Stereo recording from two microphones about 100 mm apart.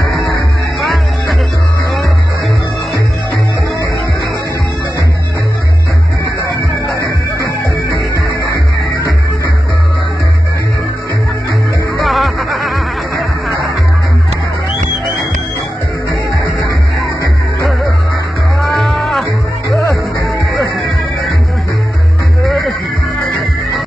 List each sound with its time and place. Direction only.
8.1 s music: 35° left (ahead or behind)
12.0 s music: centre (ahead or behind)